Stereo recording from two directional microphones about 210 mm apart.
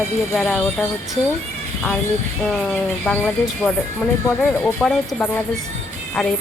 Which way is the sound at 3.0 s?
10° left (ahead or behind).